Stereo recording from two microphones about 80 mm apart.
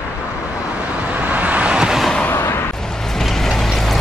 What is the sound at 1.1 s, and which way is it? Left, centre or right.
Vehicle, centre.